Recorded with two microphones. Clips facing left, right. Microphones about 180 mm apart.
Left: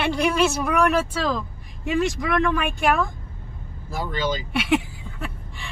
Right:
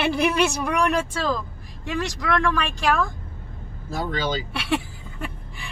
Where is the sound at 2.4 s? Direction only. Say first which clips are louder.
Left 1 dB; 20° left (ahead or behind).